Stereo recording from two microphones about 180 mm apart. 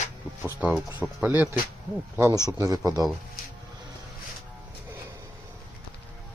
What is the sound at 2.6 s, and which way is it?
Speech, 20° right (ahead or behind).